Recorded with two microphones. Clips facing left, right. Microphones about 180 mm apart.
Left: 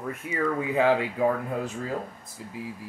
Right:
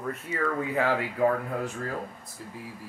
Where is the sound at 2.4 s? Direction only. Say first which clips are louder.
Left 1 dB; 15° left (ahead or behind).